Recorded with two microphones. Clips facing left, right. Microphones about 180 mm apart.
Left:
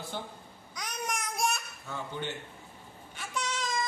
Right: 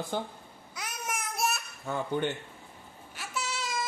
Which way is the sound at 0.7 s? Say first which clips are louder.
Left 1 dB; 5° right (ahead or behind).